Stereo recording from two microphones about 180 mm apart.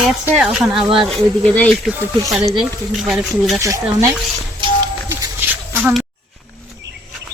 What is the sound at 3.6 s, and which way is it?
Speech, 15° right (ahead or behind).